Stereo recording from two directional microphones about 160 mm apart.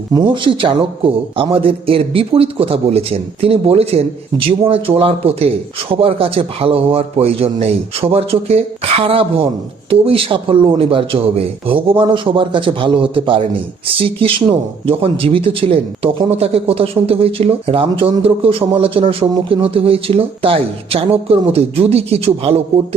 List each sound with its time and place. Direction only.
0.1 s speech: 30° right (ahead or behind)